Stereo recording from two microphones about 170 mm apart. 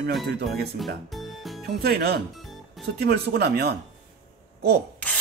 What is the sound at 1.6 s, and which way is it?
Speech, 65° right (ahead or behind).